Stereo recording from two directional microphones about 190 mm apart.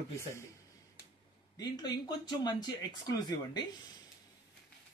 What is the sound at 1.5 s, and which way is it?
Speech, 20° left (ahead or behind).